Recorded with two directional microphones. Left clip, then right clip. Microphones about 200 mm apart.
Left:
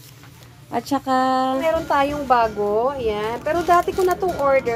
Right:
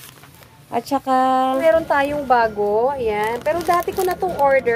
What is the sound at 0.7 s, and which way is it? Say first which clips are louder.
A woman's voice: right 2 dB; 15° right (ahead or behind).